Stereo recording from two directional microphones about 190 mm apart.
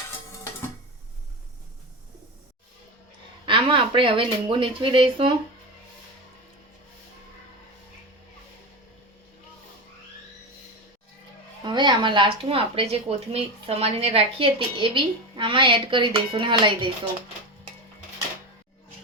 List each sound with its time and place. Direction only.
3.4 s speech: 25° right (ahead or behind)
11.6 s speech: 25° right (ahead or behind)